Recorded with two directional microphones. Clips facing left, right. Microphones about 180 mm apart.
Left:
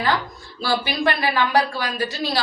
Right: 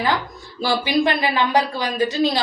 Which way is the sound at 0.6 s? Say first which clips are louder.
Right 3 dB; 20° right (ahead or behind).